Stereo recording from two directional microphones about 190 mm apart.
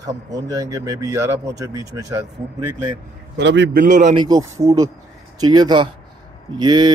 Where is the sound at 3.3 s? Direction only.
65° right (ahead or behind).